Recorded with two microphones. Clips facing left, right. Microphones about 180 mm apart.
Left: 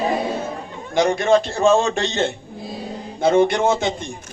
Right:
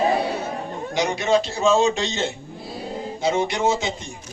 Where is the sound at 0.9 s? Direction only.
55° left (ahead or behind).